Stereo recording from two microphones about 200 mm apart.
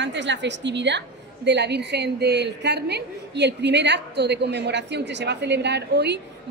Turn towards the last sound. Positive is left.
turn(degrees=-55)  # may be behind; listen again after turning